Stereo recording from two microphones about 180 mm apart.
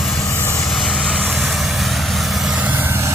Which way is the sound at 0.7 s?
5° left (ahead or behind).